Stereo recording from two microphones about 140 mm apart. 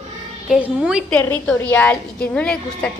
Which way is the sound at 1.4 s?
15° left (ahead or behind).